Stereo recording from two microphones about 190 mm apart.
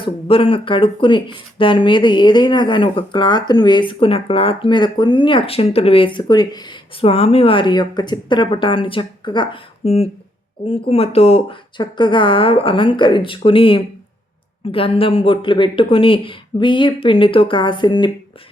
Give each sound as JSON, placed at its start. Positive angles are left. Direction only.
{"t": 0.0, "sound": "speech", "side_deg": 30}